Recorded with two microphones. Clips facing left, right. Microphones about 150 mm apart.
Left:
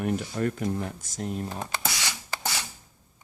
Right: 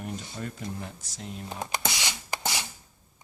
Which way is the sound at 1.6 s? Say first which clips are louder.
Even; 20° right (ahead or behind).